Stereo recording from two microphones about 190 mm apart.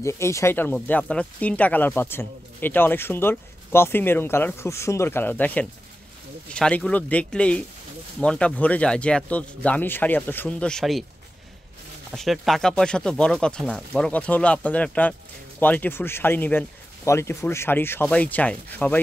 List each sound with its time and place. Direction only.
0.0 s speech: 15° left (ahead or behind)
12.1 s speech: centre (ahead or behind)